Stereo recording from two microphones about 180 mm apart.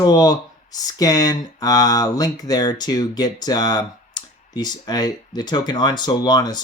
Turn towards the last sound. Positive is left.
turn(degrees=25)  # may be behind; listen again after turning